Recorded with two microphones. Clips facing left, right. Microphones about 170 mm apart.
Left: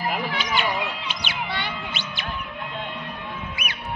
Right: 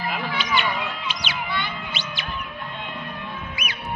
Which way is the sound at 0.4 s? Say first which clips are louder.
Even; 45° left (ahead or behind).